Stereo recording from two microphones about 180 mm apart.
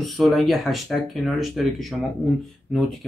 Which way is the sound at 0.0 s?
Centre (ahead or behind).